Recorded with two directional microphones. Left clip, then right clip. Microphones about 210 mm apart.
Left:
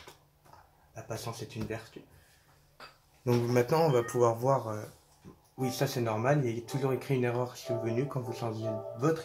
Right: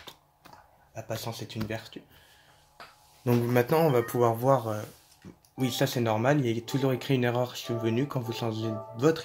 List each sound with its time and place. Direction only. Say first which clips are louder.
0.9 s speech: right 4 dB; 45° right (ahead or behind)
3.3 s speech: right 2 dB; 35° right (ahead or behind)